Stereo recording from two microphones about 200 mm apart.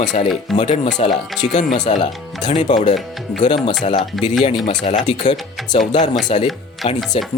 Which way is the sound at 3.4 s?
25° left (ahead or behind).